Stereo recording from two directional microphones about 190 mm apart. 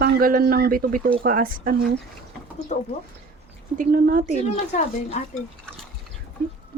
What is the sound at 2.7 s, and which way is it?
Speech, 40° left (ahead or behind).